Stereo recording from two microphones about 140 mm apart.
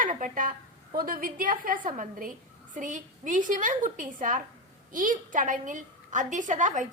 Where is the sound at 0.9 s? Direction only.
90° right.